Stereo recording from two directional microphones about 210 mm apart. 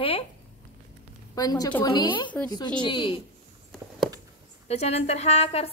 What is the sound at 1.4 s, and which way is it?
Speech, 20° left (ahead or behind).